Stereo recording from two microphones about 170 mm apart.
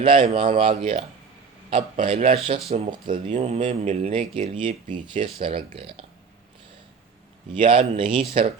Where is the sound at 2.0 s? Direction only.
35° right (ahead or behind).